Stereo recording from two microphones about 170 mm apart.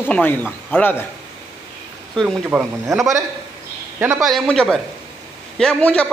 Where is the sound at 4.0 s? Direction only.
15° right (ahead or behind).